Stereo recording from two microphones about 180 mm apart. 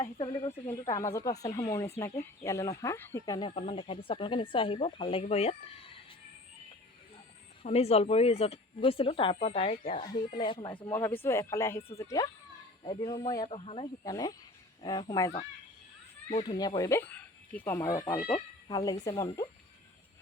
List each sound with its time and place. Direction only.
0.0 s speech: 30° left (ahead or behind)
0.9 s speech: 20° left (ahead or behind)
7.6 s speech: 35° left (ahead or behind)
10.2 s speech: 30° left (ahead or behind)
12.8 s speech: 30° left (ahead or behind)
14.0 s speech: 20° left (ahead or behind)
16.4 s speech: 25° left (ahead or behind)